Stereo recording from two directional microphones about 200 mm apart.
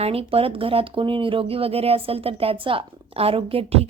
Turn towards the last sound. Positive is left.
turn(degrees=-30)  # may be behind; listen again after turning